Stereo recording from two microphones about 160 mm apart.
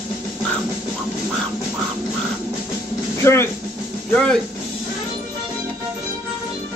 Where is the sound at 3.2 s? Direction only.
15° left (ahead or behind).